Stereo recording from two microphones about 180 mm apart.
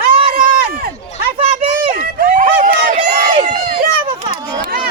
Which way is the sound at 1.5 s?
50° right (ahead or behind).